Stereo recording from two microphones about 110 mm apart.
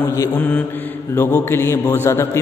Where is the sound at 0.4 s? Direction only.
15° left (ahead or behind).